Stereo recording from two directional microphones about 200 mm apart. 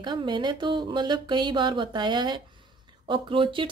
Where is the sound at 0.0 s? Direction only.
25° right (ahead or behind).